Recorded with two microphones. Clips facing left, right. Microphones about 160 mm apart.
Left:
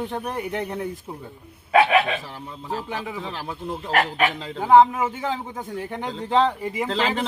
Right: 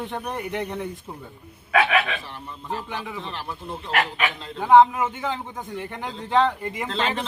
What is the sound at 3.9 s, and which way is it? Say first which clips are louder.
Speech: left 3 dB; 40° left (ahead or behind).